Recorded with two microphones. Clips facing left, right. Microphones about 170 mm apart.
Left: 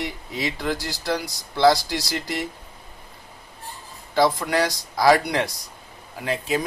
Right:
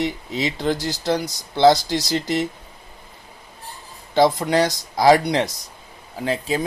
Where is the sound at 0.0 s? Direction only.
25° right (ahead or behind).